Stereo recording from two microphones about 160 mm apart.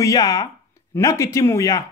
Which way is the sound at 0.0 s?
20° left (ahead or behind).